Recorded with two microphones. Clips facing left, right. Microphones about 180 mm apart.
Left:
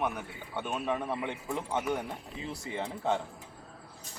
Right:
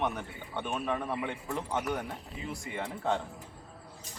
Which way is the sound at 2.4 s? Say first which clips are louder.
Left 1 dB; 25° left (ahead or behind).